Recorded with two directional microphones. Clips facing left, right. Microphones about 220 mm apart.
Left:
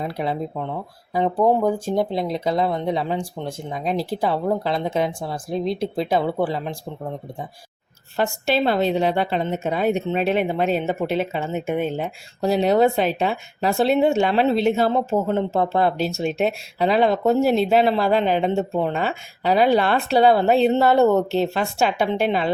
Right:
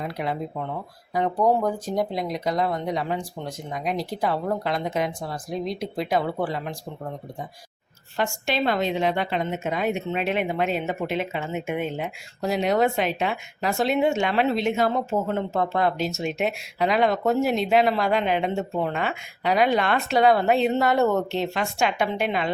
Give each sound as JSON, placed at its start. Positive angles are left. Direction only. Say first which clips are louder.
{"t": 0.0, "sound": "a woman's voice", "louder": "left 3 dB", "side_deg": 30}
{"t": 8.1, "sound": "a woman's voice", "louder": "left 5 dB", "side_deg": 35}